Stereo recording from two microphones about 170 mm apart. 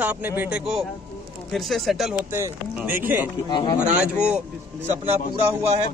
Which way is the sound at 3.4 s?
25° left (ahead or behind).